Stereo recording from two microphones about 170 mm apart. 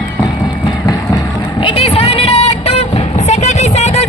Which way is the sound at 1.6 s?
30° left (ahead or behind).